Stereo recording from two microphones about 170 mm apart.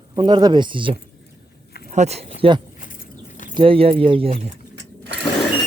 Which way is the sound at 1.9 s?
40° right (ahead or behind).